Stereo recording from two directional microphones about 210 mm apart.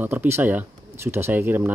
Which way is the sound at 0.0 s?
10° right (ahead or behind).